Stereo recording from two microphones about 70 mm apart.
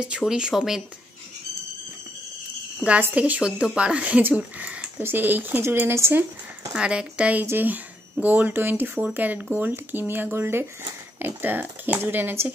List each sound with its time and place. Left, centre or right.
0.3 s speech: centre
3.2 s speech: centre; by 6.2 s right
6.7 s speech: centre; by 12.5 s right